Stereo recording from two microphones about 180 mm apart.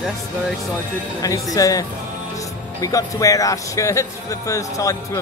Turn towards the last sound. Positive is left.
turn(degrees=15)  # may be behind; listen again after turning